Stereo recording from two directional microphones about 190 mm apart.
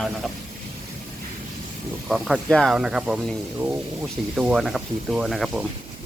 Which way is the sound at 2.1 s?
5° left (ahead or behind).